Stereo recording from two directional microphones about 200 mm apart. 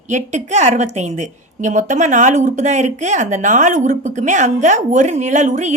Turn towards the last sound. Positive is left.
turn(degrees=-35)  # may be behind; listen again after turning